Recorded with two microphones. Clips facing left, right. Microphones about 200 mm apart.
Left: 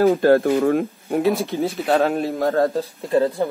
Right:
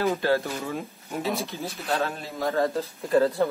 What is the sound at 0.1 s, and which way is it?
Speech, 50° left (ahead or behind).